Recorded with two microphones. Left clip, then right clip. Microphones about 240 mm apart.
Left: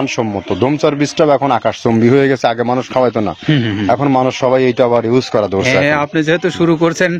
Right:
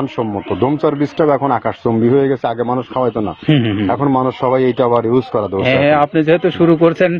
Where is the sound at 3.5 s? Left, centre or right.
Left.